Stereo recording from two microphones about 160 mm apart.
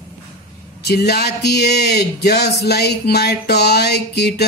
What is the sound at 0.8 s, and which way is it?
A man's voice, 90° left.